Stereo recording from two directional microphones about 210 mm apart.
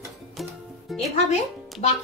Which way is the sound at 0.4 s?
Centre (ahead or behind).